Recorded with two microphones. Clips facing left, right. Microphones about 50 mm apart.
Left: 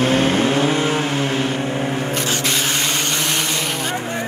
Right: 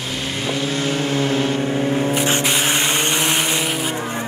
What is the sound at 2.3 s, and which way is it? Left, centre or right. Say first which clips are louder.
Vehicle: right 2 dB; centre.